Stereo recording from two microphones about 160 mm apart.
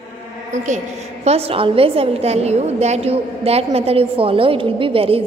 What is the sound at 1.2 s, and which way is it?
A woman's voice, 40° right (ahead or behind).